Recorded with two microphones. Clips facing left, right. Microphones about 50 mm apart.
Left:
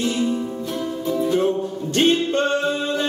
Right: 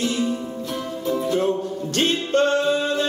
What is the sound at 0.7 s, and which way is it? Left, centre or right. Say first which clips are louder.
Music: left 1 dB; centre.